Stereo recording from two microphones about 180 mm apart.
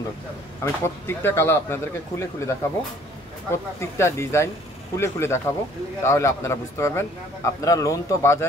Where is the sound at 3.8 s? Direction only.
15° left (ahead or behind).